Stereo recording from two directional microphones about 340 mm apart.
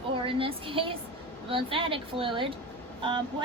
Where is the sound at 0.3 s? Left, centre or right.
Centre.